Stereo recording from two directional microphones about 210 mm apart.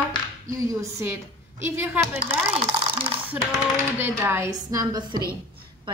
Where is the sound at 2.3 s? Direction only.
30° right (ahead or behind).